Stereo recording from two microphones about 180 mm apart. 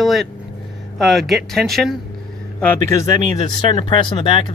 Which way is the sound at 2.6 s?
15° left (ahead or behind).